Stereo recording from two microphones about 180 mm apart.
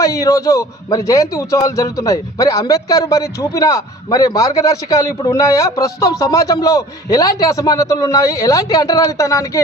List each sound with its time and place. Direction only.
0.0 s a man's voice: 20° left (ahead or behind)